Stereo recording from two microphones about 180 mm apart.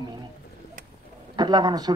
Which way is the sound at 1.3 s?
25° right (ahead or behind).